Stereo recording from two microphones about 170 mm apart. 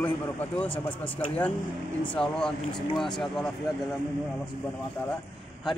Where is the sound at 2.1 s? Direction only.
5° left (ahead or behind).